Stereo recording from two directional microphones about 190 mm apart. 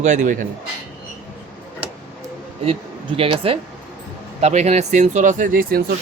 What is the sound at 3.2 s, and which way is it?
Speech, 30° right (ahead or behind).